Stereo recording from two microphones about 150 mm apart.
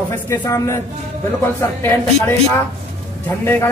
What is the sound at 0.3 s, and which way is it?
A man's voice, 20° left (ahead or behind).